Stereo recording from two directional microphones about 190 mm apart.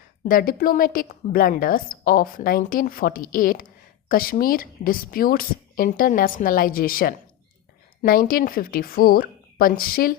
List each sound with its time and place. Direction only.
0.3 s a woman's voice: 50° left (ahead or behind)